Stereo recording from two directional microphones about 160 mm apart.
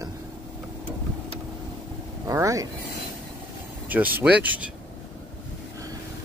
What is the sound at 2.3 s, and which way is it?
Speech, 20° right (ahead or behind).